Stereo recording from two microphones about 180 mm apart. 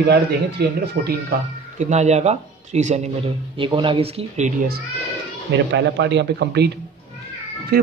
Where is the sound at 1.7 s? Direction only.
40° right (ahead or behind).